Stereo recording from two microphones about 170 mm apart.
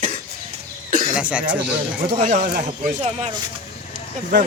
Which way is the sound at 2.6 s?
40° right (ahead or behind).